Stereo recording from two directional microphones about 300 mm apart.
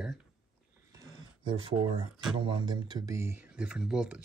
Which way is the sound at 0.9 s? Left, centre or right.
Centre.